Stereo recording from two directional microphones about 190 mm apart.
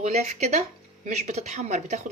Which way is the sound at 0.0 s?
35° right (ahead or behind).